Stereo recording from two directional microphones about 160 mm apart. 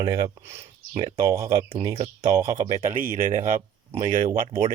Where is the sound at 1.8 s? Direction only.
30° right (ahead or behind).